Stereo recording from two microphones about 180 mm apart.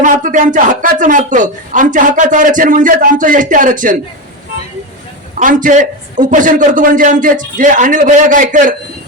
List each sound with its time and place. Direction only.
0.0 s a woman's voice: 45° right (ahead or behind)
5.4 s a woman's voice: 45° right (ahead or behind)